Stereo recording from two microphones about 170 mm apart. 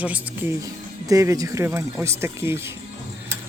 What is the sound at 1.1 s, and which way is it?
Speech, 20° right (ahead or behind).